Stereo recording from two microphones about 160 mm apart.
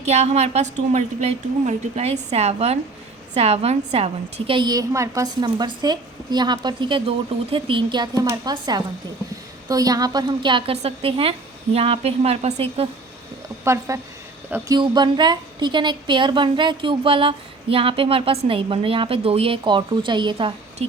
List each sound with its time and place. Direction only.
0.0 s a woman's voice: 45° right (ahead or behind)
13.7 s a woman's voice: 20° right (ahead or behind)